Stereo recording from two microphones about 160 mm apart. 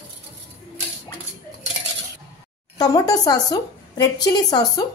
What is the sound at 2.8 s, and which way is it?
A woman's voice, 25° left (ahead or behind).